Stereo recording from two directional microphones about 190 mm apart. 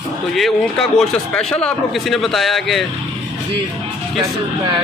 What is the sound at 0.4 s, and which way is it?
A man's voice, 5° left (ahead or behind).